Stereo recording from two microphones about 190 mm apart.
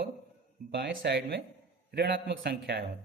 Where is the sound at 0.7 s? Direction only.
60° right (ahead or behind).